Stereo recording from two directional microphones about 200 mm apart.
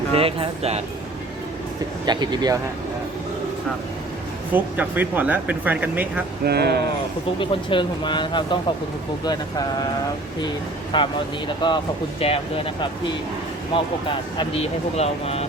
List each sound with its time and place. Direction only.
0.2 s speech: 30° right (ahead or behind)
2.0 s speech: 20° right (ahead or behind)
4.5 s speech: 10° right (ahead or behind)
6.4 s speech: 55° right (ahead or behind)
7.3 s speech: 25° left (ahead or behind)
10.9 s speech: 25° left (ahead or behind)
13.7 s speech: 25° left (ahead or behind)